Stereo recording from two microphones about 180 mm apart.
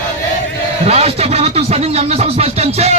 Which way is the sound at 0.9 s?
35° right (ahead or behind).